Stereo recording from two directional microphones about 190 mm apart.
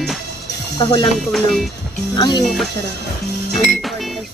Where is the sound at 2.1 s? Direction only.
20° left (ahead or behind).